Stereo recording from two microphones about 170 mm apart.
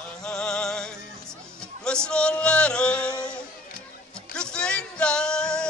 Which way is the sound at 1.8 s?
5° left (ahead or behind).